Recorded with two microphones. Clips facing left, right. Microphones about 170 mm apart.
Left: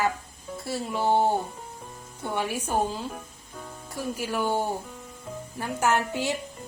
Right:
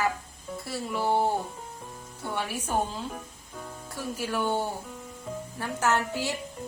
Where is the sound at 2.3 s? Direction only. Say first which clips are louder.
Left 2 dB; 10° left (ahead or behind).